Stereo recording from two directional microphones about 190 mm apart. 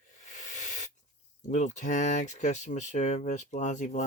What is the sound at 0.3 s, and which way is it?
Hiss, 40° left (ahead or behind).